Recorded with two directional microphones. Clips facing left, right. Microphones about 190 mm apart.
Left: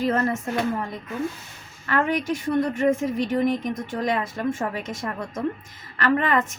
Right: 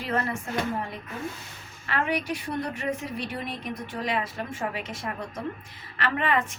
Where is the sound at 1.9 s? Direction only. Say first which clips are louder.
Left 5 dB; 45° left (ahead or behind).